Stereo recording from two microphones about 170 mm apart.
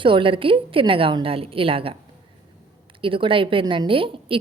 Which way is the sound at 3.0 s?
30° right (ahead or behind).